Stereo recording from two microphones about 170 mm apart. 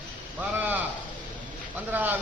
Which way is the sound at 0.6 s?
10° right (ahead or behind).